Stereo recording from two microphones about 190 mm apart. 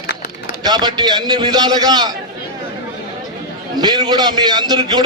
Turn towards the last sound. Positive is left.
turn(degrees=-20)  # may be behind; listen again after turning